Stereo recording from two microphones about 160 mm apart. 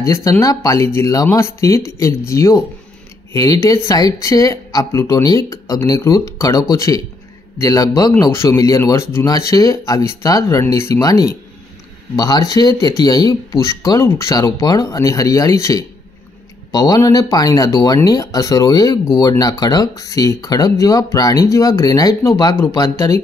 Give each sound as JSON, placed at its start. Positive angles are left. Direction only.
{"t": 0.0, "sound": "speech", "side_deg": 20}